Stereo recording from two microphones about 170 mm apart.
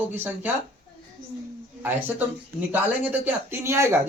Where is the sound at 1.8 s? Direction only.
10° right (ahead or behind).